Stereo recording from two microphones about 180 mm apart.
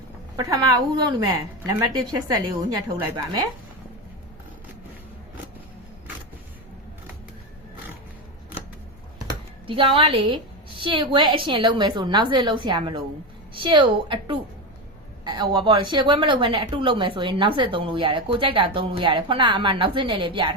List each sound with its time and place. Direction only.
0.3 s a woman's voice: 20° right (ahead or behind)
9.6 s a woman's voice: 30° right (ahead or behind)